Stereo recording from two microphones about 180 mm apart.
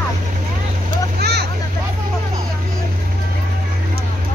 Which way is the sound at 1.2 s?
65° right (ahead or behind).